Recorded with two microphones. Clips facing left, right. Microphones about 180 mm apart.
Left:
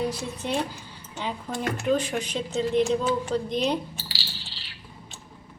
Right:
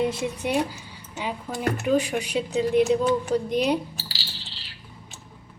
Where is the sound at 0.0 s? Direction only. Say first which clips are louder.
Right 4 dB; 25° right (ahead or behind).